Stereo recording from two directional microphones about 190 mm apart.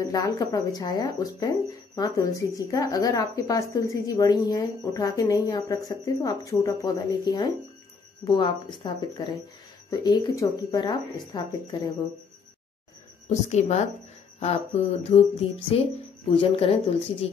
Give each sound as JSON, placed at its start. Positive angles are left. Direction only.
{"t": 0.0, "sound": "speech", "side_deg": 20}
{"t": 13.3, "sound": "speech", "side_deg": 35}